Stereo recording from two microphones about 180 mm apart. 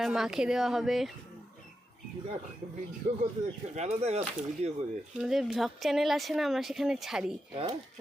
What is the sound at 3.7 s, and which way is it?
Speech, 35° right (ahead or behind).